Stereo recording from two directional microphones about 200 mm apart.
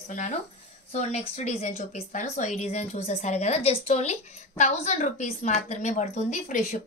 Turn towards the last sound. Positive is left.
turn(degrees=35)  # may be behind; listen again after turning